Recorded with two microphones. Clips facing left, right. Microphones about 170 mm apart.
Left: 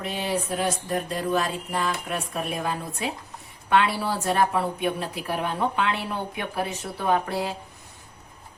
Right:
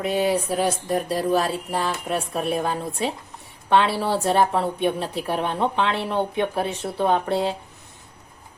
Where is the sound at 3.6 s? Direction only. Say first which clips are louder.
Right 3 dB; 30° right (ahead or behind).